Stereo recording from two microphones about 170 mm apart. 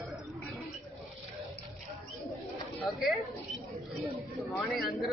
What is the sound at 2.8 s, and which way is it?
Speech, centre (ahead or behind).